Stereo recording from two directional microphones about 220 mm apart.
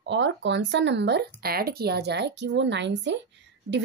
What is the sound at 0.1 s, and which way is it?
A woman's voice, 55° right (ahead or behind).